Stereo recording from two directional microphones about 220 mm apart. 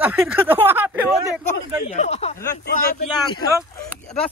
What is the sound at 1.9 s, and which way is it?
Speech, 30° left (ahead or behind).